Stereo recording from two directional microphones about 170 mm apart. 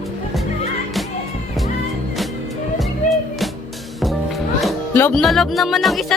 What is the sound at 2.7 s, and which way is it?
Music, centre (ahead or behind).